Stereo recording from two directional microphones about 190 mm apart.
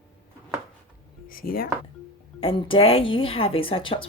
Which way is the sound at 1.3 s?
50° left (ahead or behind).